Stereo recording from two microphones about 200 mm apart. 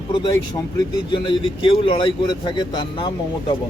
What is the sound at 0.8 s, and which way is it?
A man's voice, 25° left (ahead or behind).